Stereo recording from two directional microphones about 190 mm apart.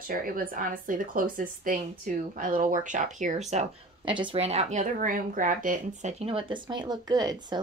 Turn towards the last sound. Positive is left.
turn(degrees=-20)  # may be behind; listen again after turning